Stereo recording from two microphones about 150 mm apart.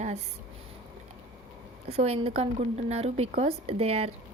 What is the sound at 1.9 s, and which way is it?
A woman's voice, 45° right (ahead or behind).